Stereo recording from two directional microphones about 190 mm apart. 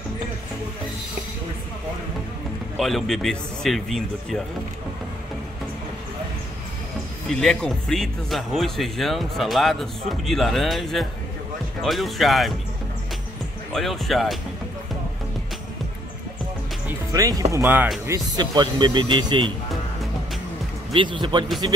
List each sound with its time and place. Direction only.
2.8 s speech: centre (ahead or behind)
7.2 s speech: 5° left (ahead or behind)
13.7 s speech: centre (ahead or behind)
17.1 s speech: 20° right (ahead or behind)
18.0 s speech: 20° right (ahead or behind)
20.9 s speech: 25° right (ahead or behind)